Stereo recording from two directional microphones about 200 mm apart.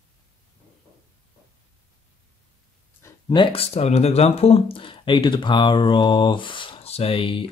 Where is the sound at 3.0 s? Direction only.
15° left (ahead or behind).